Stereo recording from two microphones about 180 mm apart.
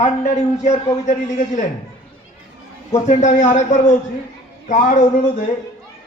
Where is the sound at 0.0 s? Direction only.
40° left (ahead or behind).